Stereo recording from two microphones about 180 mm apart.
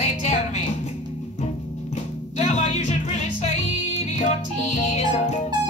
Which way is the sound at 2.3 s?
40° left (ahead or behind).